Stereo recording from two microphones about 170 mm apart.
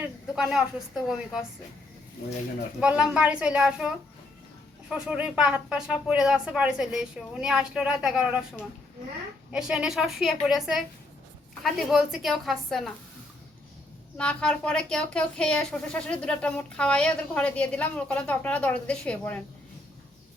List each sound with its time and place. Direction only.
0.0 s speech: 5° right (ahead or behind)
2.8 s speech: 5° right (ahead or behind)
9.5 s speech: 5° right (ahead or behind)
14.2 s speech: 5° left (ahead or behind)